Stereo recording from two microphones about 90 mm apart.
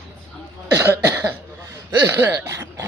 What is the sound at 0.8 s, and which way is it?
Cough, 25° right (ahead or behind).